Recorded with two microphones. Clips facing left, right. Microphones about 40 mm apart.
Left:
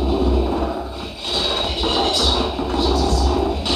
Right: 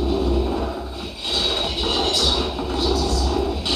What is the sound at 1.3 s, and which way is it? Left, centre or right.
Music, centre.